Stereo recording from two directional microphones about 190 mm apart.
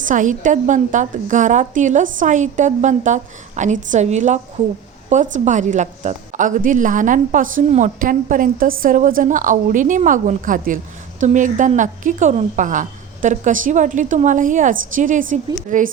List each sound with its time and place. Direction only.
0.0 s a woman's voice: 40° right (ahead or behind)